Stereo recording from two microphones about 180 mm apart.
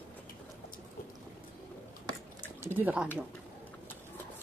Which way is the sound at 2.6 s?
10° right (ahead or behind).